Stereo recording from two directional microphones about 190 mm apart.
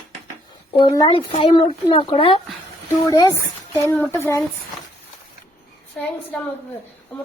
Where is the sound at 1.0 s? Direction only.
25° left (ahead or behind).